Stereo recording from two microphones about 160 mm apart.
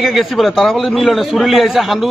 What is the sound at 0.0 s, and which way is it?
A man's voice, centre (ahead or behind).